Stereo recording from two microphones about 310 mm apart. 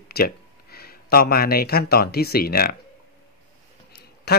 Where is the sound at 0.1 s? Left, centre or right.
Left.